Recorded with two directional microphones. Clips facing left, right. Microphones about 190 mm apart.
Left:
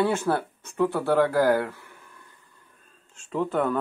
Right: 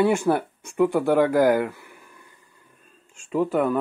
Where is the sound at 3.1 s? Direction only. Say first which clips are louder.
Right 3 dB; 10° right (ahead or behind).